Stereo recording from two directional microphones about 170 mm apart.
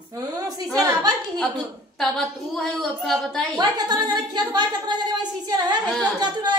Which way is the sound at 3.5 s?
25° right (ahead or behind).